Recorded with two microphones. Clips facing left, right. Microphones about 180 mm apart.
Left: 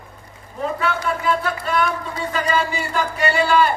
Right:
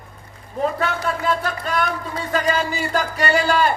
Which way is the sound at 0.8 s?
40° right (ahead or behind).